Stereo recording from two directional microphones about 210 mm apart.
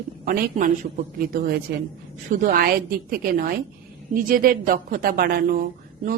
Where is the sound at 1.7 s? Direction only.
45° right (ahead or behind).